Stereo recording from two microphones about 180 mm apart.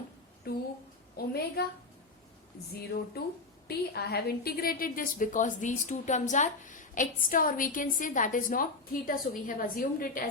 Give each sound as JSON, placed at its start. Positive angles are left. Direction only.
{"t": 0.5, "sound": "a woman's voice", "side_deg": 60}
{"t": 3.7, "sound": "a woman's voice", "side_deg": 60}